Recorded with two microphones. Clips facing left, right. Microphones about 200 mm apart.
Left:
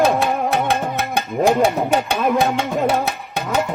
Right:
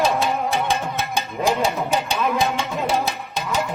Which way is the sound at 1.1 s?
60° left (ahead or behind).